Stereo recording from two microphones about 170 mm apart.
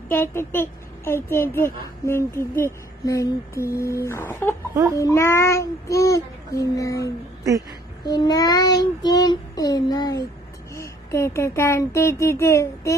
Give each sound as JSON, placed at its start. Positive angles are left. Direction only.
{"t": 0.1, "sound": "a woman's voice", "side_deg": 15}
{"t": 4.9, "sound": "child singing", "side_deg": 15}
{"t": 10.7, "sound": "a woman's voice", "side_deg": 15}